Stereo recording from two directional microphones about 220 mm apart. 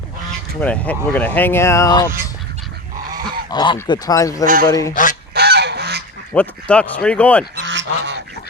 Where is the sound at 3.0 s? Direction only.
20° right (ahead or behind).